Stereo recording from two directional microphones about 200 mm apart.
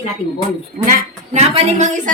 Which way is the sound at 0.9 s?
40° right (ahead or behind).